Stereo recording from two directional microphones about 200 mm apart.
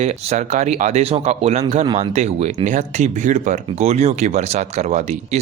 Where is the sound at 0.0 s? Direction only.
35° right (ahead or behind).